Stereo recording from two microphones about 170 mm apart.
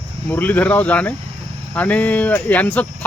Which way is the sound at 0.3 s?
10° left (ahead or behind).